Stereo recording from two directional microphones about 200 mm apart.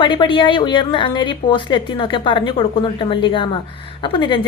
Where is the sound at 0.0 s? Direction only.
25° left (ahead or behind).